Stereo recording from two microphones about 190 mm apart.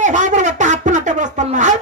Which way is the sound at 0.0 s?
40° right (ahead or behind).